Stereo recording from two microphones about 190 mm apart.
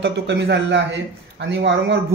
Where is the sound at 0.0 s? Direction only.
65° right (ahead or behind).